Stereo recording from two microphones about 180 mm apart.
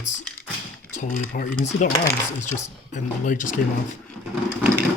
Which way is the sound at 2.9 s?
45° left (ahead or behind).